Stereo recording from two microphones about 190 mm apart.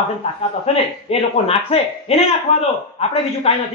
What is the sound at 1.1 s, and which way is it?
A woman's voice, 30° left (ahead or behind).